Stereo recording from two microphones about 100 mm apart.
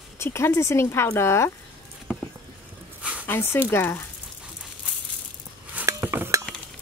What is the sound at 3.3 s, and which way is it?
Speech, 25° left (ahead or behind).